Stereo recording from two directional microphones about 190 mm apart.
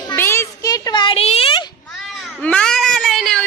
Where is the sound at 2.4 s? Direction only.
5° left (ahead or behind).